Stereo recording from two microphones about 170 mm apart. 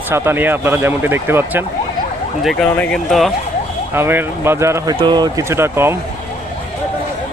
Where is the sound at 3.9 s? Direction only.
15° right (ahead or behind).